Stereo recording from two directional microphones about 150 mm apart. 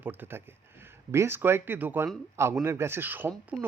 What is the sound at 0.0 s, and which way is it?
A man's voice, 15° right (ahead or behind).